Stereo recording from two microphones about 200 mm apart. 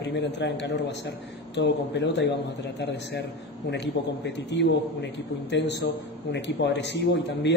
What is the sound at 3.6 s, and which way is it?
Speech, 60° left (ahead or behind).